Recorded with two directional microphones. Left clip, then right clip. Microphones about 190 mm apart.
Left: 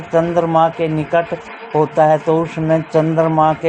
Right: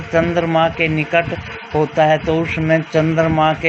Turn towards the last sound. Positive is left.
turn(degrees=-20)  # may be behind; listen again after turning